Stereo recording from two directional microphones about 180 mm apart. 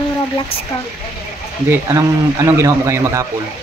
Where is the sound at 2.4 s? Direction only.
15° right (ahead or behind).